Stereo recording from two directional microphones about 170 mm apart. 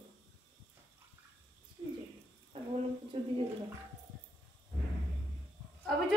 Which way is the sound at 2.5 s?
35° right (ahead or behind).